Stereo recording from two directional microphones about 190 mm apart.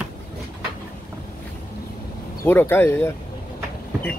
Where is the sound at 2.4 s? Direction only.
10° left (ahead or behind).